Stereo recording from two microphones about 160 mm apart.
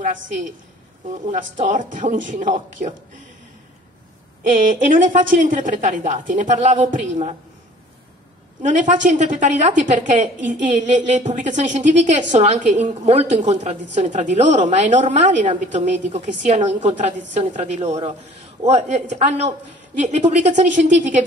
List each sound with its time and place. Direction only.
1.1 s a woman's voice: 50° right (ahead or behind)
4.4 s a woman's voice: 55° right (ahead or behind)
8.6 s a woman's voice: 50° right (ahead or behind)